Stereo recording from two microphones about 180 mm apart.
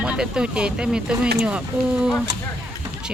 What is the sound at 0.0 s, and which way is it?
Speech, 5° right (ahead or behind).